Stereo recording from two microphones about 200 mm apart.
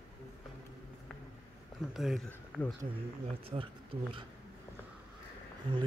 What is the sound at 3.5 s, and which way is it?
Speech, 25° right (ahead or behind).